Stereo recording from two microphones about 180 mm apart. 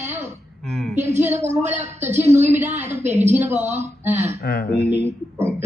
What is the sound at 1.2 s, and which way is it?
Speech, 15° right (ahead or behind).